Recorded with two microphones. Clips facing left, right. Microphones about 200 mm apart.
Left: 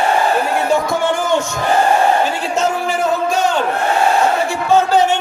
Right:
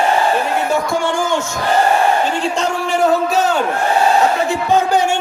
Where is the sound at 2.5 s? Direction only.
Centre (ahead or behind).